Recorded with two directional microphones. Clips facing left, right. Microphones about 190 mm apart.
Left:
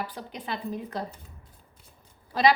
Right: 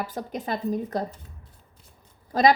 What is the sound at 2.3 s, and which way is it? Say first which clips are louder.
Speech: right 3 dB; 45° right (ahead or behind).